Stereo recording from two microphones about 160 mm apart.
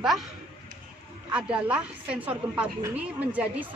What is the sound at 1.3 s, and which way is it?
Speech, 5° right (ahead or behind).